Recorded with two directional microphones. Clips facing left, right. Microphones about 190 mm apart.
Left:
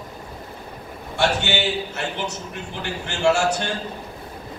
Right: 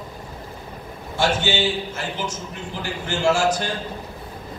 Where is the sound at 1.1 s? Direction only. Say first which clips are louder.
Even; 70° left (ahead or behind).